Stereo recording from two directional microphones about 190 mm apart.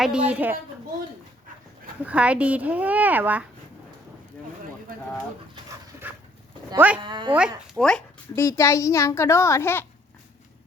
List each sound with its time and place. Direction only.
0.0 s speech: 5° right (ahead or behind)
2.0 s speech: 5° right (ahead or behind)
6.7 s speech: 10° right (ahead or behind)
7.0 s speech: 25° right (ahead or behind)
7.3 s speech: 5° right (ahead or behind)
8.4 s a child's voice: 15° left (ahead or behind)